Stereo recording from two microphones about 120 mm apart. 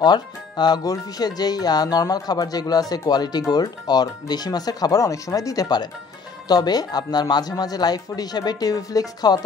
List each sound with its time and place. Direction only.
0.0 s speech: 35° left (ahead or behind)